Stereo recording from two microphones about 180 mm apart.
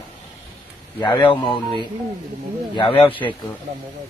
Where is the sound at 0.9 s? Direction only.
25° left (ahead or behind).